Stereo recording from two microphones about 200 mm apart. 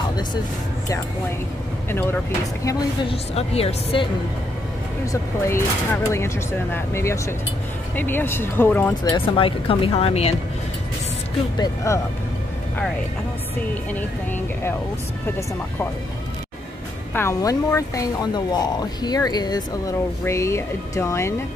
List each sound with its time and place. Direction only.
1.9 s speech: 10° left (ahead or behind)
3.1 s a woman's voice: 30° left (ahead or behind)
5.0 s speech: 15° left (ahead or behind)
9.1 s a woman's voice: 25° left (ahead or behind)
11.5 s speech: 15° left (ahead or behind)
13.9 s speech: 10° left (ahead or behind)
17.1 s speech: 15° left (ahead or behind)